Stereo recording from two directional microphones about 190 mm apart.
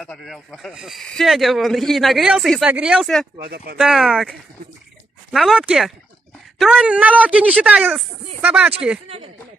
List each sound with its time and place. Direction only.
0.0 s speech: 5° left (ahead or behind)
3.4 s speech: 60° right (ahead or behind)
3.7 s speech: 5° right (ahead or behind)